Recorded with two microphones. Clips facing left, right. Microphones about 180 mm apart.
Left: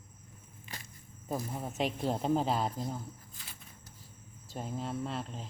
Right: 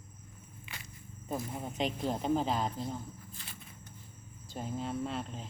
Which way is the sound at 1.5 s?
5° left (ahead or behind).